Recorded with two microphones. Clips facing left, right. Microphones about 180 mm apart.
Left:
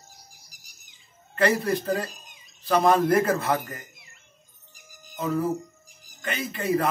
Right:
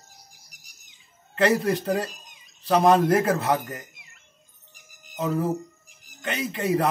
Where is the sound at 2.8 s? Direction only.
15° right (ahead or behind).